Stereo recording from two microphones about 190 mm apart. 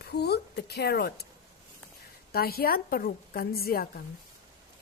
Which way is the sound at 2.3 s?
55° left (ahead or behind).